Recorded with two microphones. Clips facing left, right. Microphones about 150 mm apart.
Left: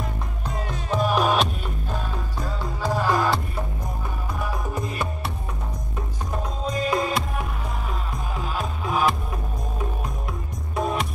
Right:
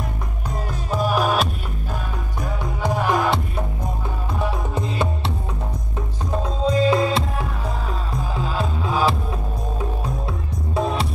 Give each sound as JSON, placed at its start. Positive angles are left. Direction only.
{"t": 0.8, "sound": "music", "side_deg": -5}
{"t": 2.4, "sound": "music", "side_deg": -20}
{"t": 6.6, "sound": "music", "side_deg": -30}
{"t": 10.2, "sound": "music", "side_deg": -30}